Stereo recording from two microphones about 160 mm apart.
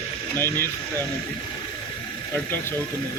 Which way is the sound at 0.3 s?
15° left (ahead or behind).